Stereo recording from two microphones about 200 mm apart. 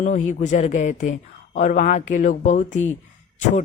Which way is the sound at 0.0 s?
35° left (ahead or behind).